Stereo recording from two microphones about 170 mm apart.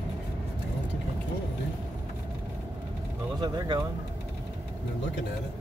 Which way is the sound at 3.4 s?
25° right (ahead or behind).